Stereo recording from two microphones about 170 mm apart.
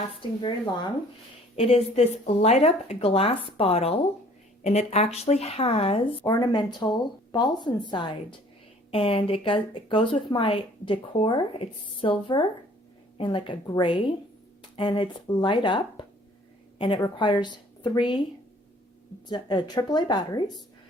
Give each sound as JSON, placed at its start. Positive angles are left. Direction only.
{"t": 0.1, "sound": "a woman's voice", "side_deg": 30}
{"t": 1.5, "sound": "a woman's voice", "side_deg": 35}
{"t": 19.3, "sound": "speech", "side_deg": 25}